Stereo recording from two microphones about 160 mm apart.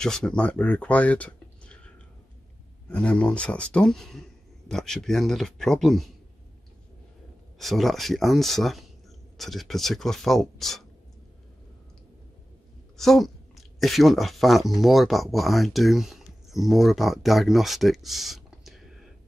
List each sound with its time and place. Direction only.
0.0 s speech: 5° left (ahead or behind)
2.9 s speech: 5° left (ahead or behind)
7.5 s speech: centre (ahead or behind)
12.9 s speech: centre (ahead or behind)